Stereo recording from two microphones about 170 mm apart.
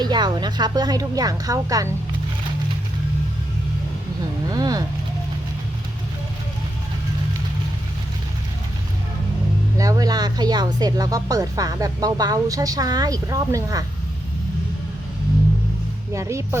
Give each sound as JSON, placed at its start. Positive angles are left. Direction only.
{"t": 0.0, "sound": "speech", "side_deg": -25}
{"t": 4.4, "sound": "a sound", "side_deg": -20}
{"t": 9.7, "sound": "speech", "side_deg": -20}
{"t": 16.1, "sound": "speech", "side_deg": -15}